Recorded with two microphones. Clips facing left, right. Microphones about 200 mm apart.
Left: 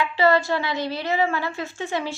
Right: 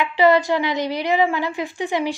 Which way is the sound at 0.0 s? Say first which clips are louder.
Right 3 dB; 15° right (ahead or behind).